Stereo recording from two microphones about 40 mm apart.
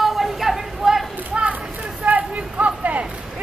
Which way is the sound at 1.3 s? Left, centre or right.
Right.